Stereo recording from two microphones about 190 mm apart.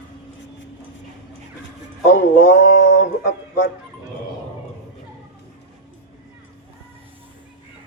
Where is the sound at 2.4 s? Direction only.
45° left (ahead or behind).